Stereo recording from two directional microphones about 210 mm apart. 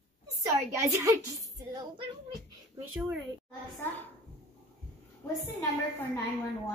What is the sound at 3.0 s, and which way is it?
Speech, centre (ahead or behind).